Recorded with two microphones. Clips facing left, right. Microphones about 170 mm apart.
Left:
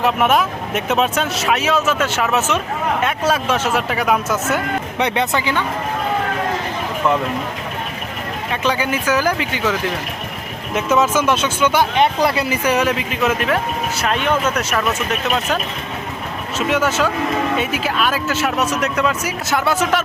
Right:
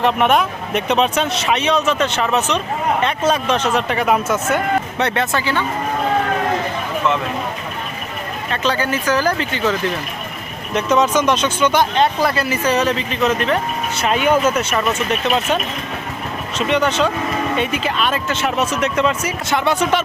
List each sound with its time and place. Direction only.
0.0 s speech: 5° left (ahead or behind)
4.9 s speech: 15° left (ahead or behind)
8.4 s speech: 15° left (ahead or behind)
10.8 s speech: 5° left (ahead or behind)
12.0 s speech: 20° left (ahead or behind); by 20.0 s centre (ahead or behind)